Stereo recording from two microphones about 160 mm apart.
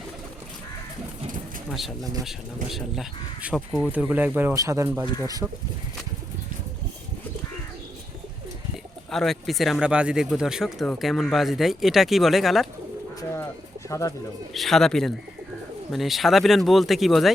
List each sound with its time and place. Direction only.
1.7 s speech: centre (ahead or behind)
3.9 s speech: 10° right (ahead or behind)
9.0 s speech: centre (ahead or behind)
13.1 s speech: 15° left (ahead or behind)
14.5 s speech: centre (ahead or behind)